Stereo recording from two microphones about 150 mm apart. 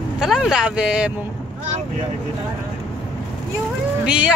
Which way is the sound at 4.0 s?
5° right (ahead or behind).